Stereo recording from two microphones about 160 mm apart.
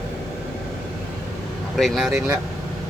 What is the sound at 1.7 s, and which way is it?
Speech, centre (ahead or behind).